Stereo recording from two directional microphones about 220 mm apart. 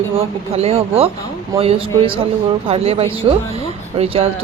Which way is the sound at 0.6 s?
25° right (ahead or behind).